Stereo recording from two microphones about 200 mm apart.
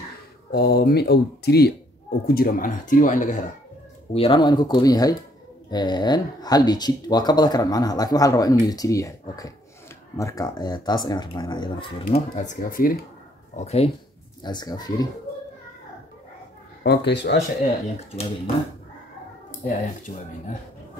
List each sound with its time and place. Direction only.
0.5 s speech: 50° left (ahead or behind)
4.1 s speech: 25° left (ahead or behind)
12.4 s speech: 40° left (ahead or behind)
13.6 s speech: 30° left (ahead or behind)
14.4 s speech: 20° left (ahead or behind)
16.8 s speech: 55° left (ahead or behind)
20.1 s speech: 35° left (ahead or behind)